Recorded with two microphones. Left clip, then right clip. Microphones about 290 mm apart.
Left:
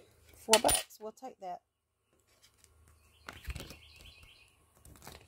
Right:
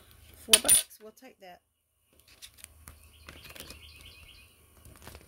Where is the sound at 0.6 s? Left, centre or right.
Centre.